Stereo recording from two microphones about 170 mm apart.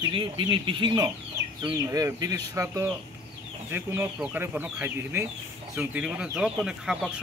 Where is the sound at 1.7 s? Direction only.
15° right (ahead or behind).